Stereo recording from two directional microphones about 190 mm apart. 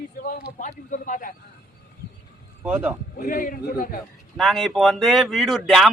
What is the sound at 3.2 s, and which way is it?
Speech, 45° left (ahead or behind).